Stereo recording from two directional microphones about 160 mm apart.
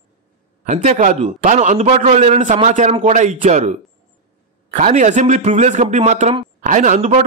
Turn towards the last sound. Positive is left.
turn(degrees=-45)  # may be behind; listen again after turning